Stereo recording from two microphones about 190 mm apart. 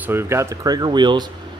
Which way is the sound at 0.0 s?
10° right (ahead or behind).